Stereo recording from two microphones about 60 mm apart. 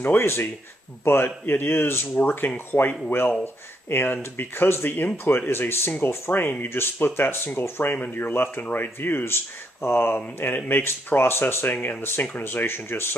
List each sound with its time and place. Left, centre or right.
0.0 s speech: left
2.1 s speech: left